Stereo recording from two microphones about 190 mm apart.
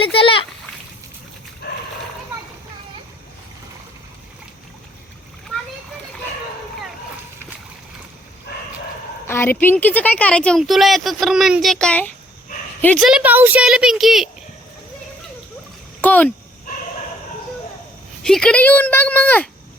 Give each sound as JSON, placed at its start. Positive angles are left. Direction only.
{"t": 0.0, "sound": "splash", "side_deg": 30}
{"t": 8.5, "sound": "bow-wow", "side_deg": 60}
{"t": 9.2, "sound": "a woman's voice", "side_deg": 10}
{"t": 13.0, "sound": "a woman's voice", "side_deg": -5}
{"t": 16.0, "sound": "a sound", "side_deg": 10}
{"t": 18.2, "sound": "speech", "side_deg": 5}